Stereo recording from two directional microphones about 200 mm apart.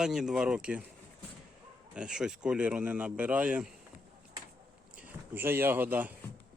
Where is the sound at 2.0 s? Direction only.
5° right (ahead or behind).